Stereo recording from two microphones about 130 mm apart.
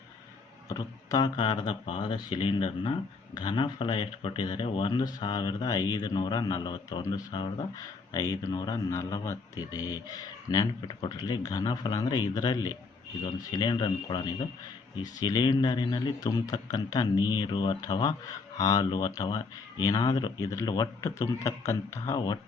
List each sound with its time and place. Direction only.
0.7 s speech: 30° left (ahead or behind)